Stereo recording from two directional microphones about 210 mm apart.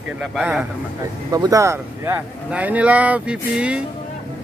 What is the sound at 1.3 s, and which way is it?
Speech, 15° right (ahead or behind).